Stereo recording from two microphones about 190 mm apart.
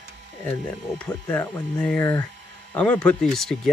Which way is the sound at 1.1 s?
20° left (ahead or behind).